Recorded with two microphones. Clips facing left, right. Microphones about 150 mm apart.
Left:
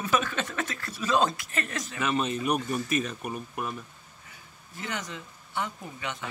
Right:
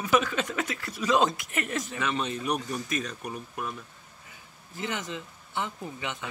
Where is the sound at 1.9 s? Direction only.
5° left (ahead or behind).